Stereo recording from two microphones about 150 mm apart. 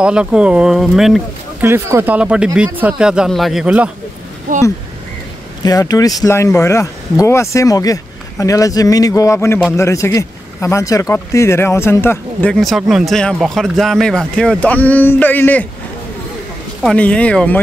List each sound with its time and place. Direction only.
0.0 s speech: 5° right (ahead or behind)
1.6 s speech: 15° right (ahead or behind)
4.5 s speech: 65° right (ahead or behind)
5.6 s speech: 25° left (ahead or behind)
16.8 s speech: 10° left (ahead or behind)